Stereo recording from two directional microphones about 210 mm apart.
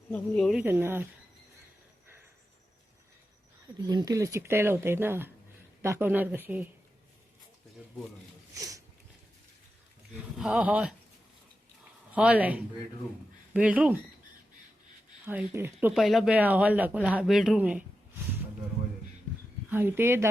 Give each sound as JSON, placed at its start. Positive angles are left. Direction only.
{"t": 0.1, "sound": "speech", "side_deg": 5}
{"t": 0.6, "sound": "speech", "side_deg": -10}
{"t": 3.8, "sound": "speech", "side_deg": -15}
{"t": 8.5, "sound": "a sound", "side_deg": -15}
{"t": 10.3, "sound": "speech", "side_deg": -5}
{"t": 12.1, "sound": "speech", "side_deg": -5}
{"t": 15.3, "sound": "speech", "side_deg": -10}
{"t": 19.7, "sound": "speech", "side_deg": -10}